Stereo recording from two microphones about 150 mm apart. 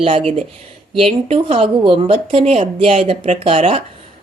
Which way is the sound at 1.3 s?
40° right (ahead or behind).